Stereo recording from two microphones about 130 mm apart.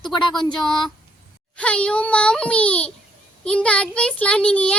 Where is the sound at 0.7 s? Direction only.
5° left (ahead or behind).